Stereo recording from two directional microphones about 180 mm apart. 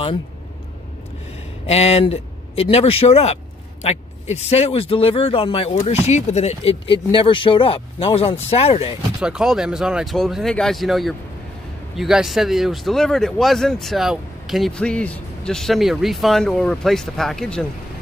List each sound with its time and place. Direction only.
1.7 s speech: 35° left (ahead or behind)
9.2 s speech: 5° right (ahead or behind)